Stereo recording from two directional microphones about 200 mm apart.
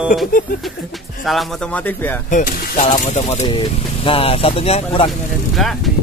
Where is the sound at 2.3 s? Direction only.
45° left (ahead or behind).